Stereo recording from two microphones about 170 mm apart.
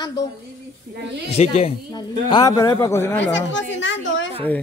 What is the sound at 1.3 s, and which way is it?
Speech, 35° left (ahead or behind).